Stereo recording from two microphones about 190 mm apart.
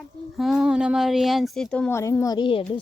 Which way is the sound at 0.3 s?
Centre (ahead or behind).